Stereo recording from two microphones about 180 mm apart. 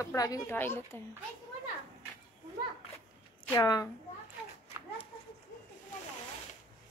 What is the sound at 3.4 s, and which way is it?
Speech, 20° left (ahead or behind).